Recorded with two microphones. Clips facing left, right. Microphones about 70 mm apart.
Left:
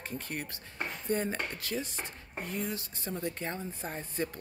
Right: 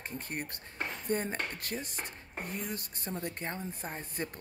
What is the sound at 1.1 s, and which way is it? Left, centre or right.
Dishes, right.